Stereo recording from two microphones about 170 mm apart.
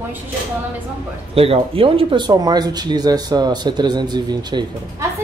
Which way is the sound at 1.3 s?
35° right (ahead or behind).